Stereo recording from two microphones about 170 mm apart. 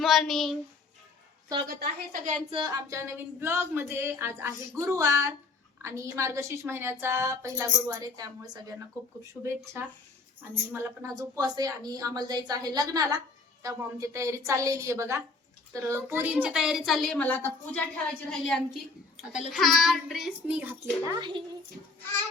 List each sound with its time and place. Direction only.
0.0 s child singing: centre (ahead or behind)
1.6 s a woman's voice: 65° right (ahead or behind)
2.5 s a woman's voice: 25° right (ahead or behind)
21.1 s speech: 25° right (ahead or behind)